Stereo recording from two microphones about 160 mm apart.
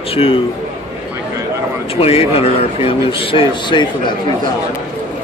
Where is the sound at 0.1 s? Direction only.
35° left (ahead or behind).